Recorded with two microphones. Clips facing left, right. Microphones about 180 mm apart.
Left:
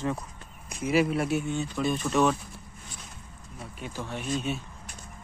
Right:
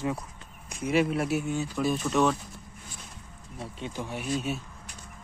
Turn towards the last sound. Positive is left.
turn(degrees=-5)  # may be behind; listen again after turning